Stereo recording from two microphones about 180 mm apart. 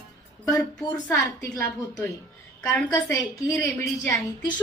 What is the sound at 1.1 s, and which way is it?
A woman's voice, 20° left (ahead or behind).